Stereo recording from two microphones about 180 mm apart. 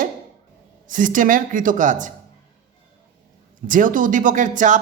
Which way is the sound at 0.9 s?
45° right (ahead or behind).